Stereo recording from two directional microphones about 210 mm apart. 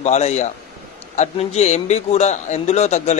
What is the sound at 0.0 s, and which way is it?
A man's voice, 35° left (ahead or behind).